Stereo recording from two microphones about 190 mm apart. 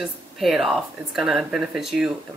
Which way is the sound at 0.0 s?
Centre (ahead or behind).